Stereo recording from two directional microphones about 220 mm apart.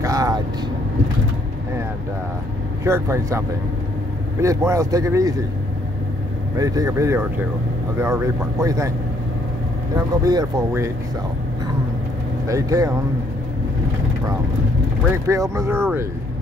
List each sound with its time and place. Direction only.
0.0 s vehicle: 15° right (ahead or behind)
2.8 s speech: 10° right (ahead or behind)
6.6 s speech: 15° right (ahead or behind)
9.9 s speech: 15° right (ahead or behind)
12.4 s speech: 15° right (ahead or behind)
15.2 s speech: 15° right (ahead or behind)